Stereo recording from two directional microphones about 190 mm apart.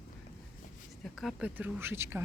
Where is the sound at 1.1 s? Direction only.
5° right (ahead or behind).